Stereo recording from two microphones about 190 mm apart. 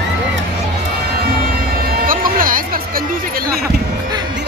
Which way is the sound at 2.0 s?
50° right (ahead or behind).